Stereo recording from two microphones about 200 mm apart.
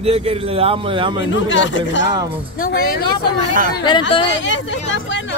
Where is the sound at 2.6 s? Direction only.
50° left (ahead or behind).